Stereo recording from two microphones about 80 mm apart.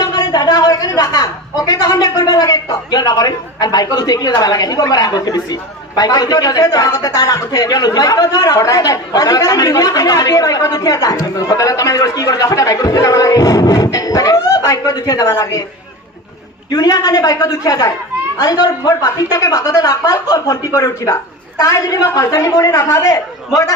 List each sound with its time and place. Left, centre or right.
0.0 s a man's voice: left
16.6 s a man's voice: left